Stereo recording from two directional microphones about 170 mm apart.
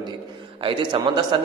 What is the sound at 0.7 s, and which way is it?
Speech, 30° right (ahead or behind).